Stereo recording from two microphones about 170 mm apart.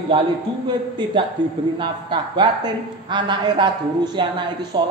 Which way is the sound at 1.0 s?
25° right (ahead or behind).